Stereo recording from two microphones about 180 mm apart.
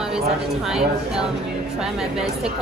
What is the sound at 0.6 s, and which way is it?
Speech, 5° right (ahead or behind).